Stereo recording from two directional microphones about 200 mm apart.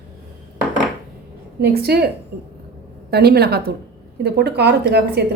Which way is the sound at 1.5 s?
55° right (ahead or behind).